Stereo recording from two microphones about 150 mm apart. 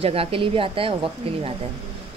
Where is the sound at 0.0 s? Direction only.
40° right (ahead or behind).